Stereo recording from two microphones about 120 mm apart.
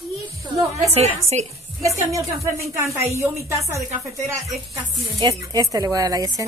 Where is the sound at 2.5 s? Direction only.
25° right (ahead or behind).